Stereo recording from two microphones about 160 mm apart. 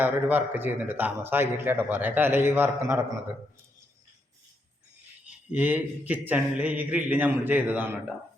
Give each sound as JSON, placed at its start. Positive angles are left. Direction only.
{"t": 0.0, "sound": "a man's voice", "side_deg": -10}
{"t": 5.5, "sound": "a man's voice", "side_deg": -10}